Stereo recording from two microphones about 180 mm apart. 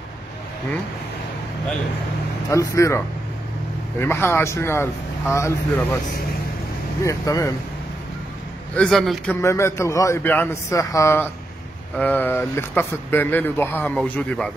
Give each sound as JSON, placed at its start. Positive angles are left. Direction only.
{"t": 2.5, "sound": "speech", "side_deg": 15}
{"t": 4.0, "sound": "speech", "side_deg": 15}
{"t": 7.1, "sound": "speech", "side_deg": 20}
{"t": 8.7, "sound": "a man's voice", "side_deg": 5}
{"t": 9.3, "sound": "speech", "side_deg": 15}